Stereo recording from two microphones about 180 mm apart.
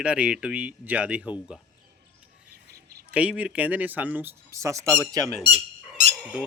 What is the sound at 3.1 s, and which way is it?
Speech, 5° right (ahead or behind).